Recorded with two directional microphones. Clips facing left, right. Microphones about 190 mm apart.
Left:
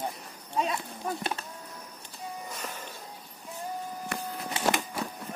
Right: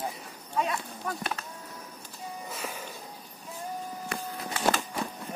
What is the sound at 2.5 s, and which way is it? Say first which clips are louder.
Music: right 2 dB; 10° right (ahead or behind).